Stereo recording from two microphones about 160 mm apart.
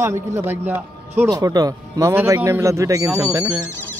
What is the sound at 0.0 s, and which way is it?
A man's voice, 20° right (ahead or behind).